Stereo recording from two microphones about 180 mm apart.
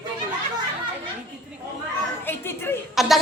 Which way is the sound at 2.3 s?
10° left (ahead or behind).